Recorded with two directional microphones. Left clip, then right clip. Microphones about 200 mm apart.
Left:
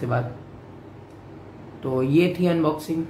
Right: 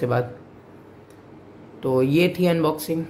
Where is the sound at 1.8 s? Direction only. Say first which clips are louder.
Right 2 dB; 40° right (ahead or behind).